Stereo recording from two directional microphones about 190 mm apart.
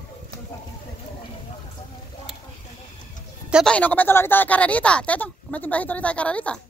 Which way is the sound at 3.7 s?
10° left (ahead or behind).